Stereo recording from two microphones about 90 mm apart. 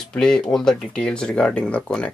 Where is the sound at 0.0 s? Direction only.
10° left (ahead or behind).